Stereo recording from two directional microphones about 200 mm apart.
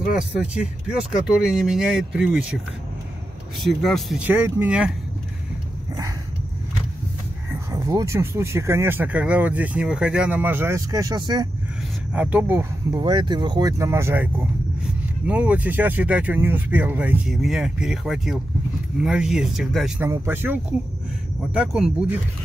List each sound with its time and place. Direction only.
0.4 s speech: 5° right (ahead or behind)
7.7 s speech: 15° right (ahead or behind)
12.1 s speech: 5° right (ahead or behind)
12.9 s speech: 20° right (ahead or behind); by 22.1 s 5° right (ahead or behind)